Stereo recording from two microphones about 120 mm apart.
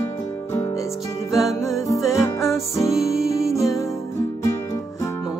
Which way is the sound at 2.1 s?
25° left (ahead or behind).